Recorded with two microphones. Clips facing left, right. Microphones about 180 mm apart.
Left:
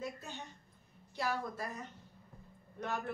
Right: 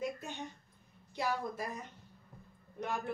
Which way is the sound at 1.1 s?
15° right (ahead or behind).